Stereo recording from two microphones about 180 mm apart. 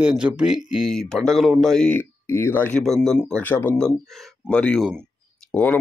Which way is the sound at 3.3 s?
10° left (ahead or behind).